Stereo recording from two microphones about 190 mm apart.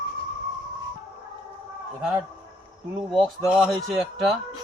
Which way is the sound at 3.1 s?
5° right (ahead or behind).